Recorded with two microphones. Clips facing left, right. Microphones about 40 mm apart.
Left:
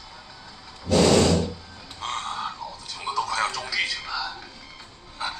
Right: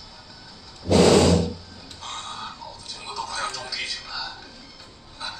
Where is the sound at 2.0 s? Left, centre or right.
Left.